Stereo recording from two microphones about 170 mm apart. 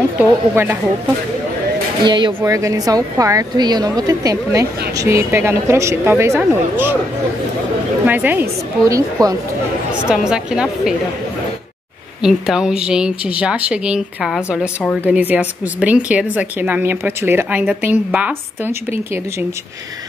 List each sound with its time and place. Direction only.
0.2 s a woman's voice: 10° right (ahead or behind)
2.0 s a woman's voice: 30° right (ahead or behind)
8.1 s a woman's voice: 10° right (ahead or behind)
10.0 s speech: 5° right (ahead or behind)
12.2 s a woman's voice: 5° right (ahead or behind)